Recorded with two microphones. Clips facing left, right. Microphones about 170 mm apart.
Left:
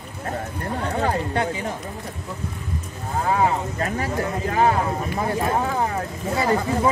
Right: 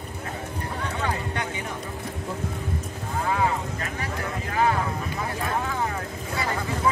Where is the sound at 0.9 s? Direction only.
35° left (ahead or behind).